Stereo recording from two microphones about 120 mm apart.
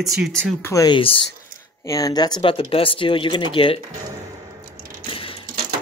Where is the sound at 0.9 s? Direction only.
45° left (ahead or behind).